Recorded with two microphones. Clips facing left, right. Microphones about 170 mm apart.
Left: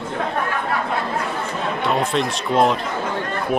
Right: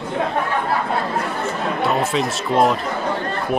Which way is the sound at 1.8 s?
5° right (ahead or behind).